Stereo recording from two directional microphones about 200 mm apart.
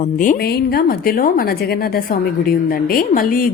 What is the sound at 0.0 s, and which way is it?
A woman's voice, 40° left (ahead or behind).